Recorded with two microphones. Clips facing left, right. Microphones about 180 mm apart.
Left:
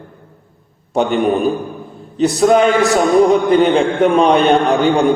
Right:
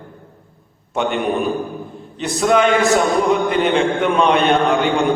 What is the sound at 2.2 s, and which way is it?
A man's voice, 40° left (ahead or behind).